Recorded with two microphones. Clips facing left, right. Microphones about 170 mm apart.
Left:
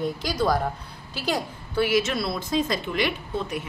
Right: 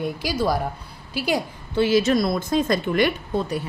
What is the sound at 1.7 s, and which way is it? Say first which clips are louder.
A woman's voice: right 5 dB; 25° right (ahead or behind).